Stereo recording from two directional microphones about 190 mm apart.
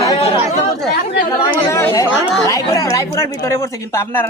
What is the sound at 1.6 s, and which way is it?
Speech, 15° left (ahead or behind).